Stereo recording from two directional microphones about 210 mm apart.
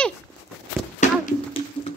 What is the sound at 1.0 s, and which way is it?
Speech, 35° left (ahead or behind).